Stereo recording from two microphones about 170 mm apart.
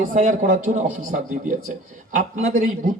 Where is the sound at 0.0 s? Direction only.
50° right (ahead or behind).